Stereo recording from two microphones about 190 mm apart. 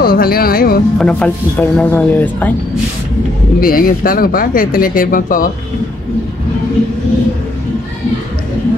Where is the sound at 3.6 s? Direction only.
50° left (ahead or behind).